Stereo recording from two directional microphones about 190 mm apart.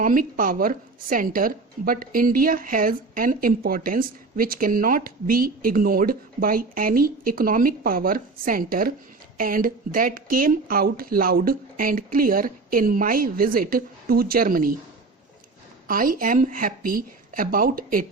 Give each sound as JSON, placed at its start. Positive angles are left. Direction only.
{"t": 0.0, "sound": "a woman's voice", "side_deg": -45}
{"t": 15.9, "sound": "a woman's voice", "side_deg": -50}